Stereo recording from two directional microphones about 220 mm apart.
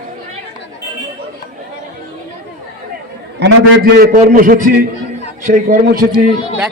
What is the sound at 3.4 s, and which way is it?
A man's voice, 45° right (ahead or behind).